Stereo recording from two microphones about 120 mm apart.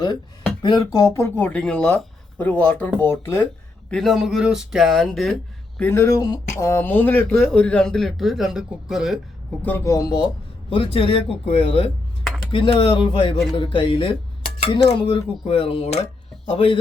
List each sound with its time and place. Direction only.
0.6 s speech: 35° left (ahead or behind)
1.4 s speech: 10° left (ahead or behind)
3.8 s speech: 5° left (ahead or behind)
5.8 s speech: 20° left (ahead or behind); by 9.1 s 5° right (ahead or behind)
9.6 s speech: 15° left (ahead or behind)
9.8 s a man's voice: 30° left (ahead or behind); by 16.0 s 60° left (ahead or behind)
16.5 s a man's voice: 50° left (ahead or behind)